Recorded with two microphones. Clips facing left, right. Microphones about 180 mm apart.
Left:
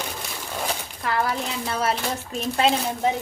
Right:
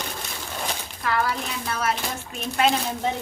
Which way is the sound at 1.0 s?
30° left (ahead or behind).